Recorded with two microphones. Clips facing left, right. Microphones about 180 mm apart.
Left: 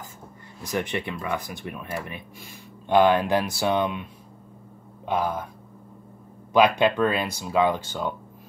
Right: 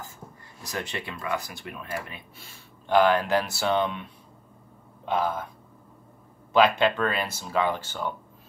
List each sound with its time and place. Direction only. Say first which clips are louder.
0.7 s speech: left 6 dB; 20° left (ahead or behind)
2.4 s speech: left 5 dB; 20° left (ahead or behind)
6.5 s speech: left 2 dB; 15° left (ahead or behind)